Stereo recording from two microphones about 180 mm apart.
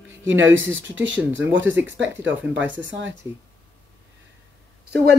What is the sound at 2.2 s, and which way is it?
Speech, 90° right.